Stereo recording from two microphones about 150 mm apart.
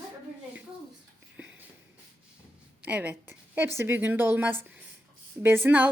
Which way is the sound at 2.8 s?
10° right (ahead or behind).